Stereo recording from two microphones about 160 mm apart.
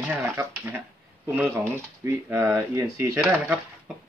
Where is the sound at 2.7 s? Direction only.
15° right (ahead or behind).